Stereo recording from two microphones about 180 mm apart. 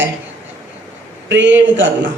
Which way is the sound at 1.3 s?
90° right.